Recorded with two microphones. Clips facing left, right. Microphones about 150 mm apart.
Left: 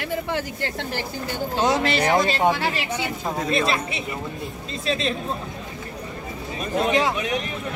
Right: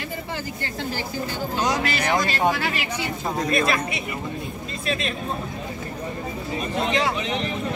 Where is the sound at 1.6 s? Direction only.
25° left (ahead or behind).